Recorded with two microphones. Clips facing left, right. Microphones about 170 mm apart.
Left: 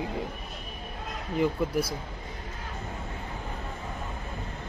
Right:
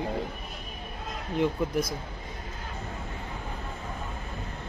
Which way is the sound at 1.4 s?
10° left (ahead or behind).